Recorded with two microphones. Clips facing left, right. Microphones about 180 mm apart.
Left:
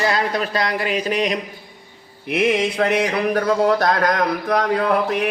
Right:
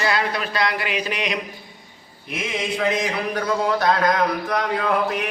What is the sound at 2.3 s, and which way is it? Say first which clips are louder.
Speech: left 8 dB; 65° left (ahead or behind).